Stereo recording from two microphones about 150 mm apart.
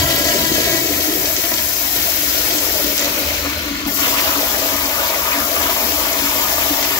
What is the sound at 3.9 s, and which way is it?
Water, 25° left (ahead or behind).